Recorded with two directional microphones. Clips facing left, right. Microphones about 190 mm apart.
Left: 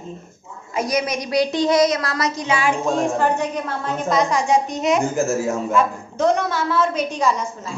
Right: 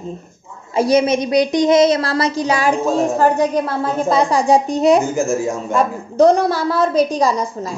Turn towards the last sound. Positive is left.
turn(degrees=-35)  # may be behind; listen again after turning